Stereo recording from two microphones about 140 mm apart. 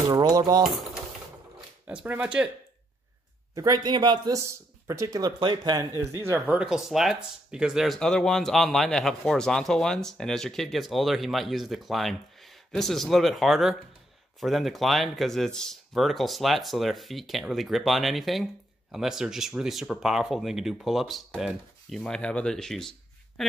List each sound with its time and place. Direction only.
0.1 s speech: 30° right (ahead or behind)
1.9 s speech: 10° right (ahead or behind)
3.5 s speech: 30° right (ahead or behind)
4.4 s speech: 20° right (ahead or behind)
5.9 s speech: 20° right (ahead or behind); by 23.4 s 5° left (ahead or behind)